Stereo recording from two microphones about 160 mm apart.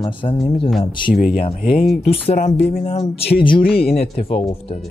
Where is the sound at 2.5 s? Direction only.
90° left.